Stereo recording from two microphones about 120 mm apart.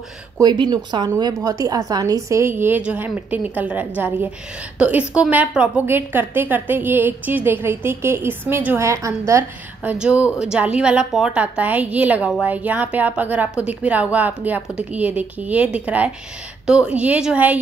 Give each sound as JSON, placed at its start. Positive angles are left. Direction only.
{"t": 0.4, "sound": "a woman's voice", "side_deg": -35}
{"t": 9.9, "sound": "a woman's voice", "side_deg": -10}